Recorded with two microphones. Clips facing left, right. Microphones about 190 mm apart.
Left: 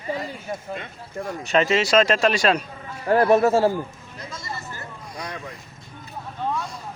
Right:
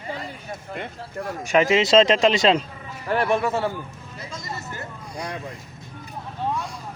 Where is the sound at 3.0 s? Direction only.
25° left (ahead or behind).